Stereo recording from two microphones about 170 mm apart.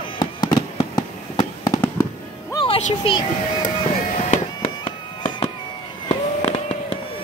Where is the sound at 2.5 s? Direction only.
30° left (ahead or behind).